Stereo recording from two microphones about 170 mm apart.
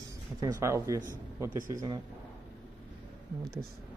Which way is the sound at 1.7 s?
20° right (ahead or behind).